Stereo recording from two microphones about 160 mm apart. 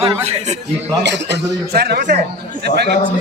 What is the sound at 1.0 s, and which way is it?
Speech, 90° right.